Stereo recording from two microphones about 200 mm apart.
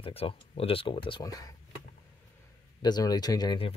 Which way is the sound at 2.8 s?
20° left (ahead or behind).